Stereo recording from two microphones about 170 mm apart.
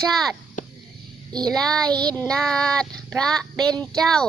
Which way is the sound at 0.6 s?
50° left (ahead or behind).